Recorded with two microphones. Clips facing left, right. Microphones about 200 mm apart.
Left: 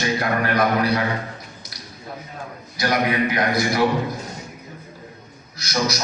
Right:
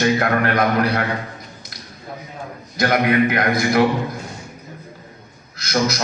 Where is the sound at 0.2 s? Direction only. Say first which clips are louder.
Right 2 dB; 55° right (ahead or behind).